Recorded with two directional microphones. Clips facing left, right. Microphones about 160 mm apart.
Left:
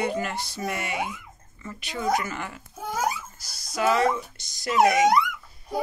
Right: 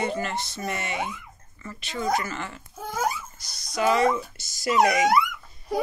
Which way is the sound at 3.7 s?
Centre (ahead or behind).